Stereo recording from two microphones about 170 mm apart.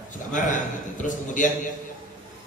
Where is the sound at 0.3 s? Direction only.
50° left (ahead or behind).